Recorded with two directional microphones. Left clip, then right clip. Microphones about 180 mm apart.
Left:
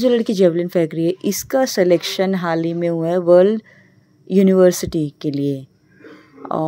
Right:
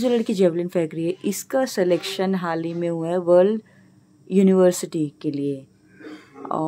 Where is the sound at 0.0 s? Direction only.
20° left (ahead or behind).